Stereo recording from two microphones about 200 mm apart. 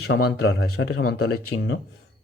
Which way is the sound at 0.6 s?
90° left.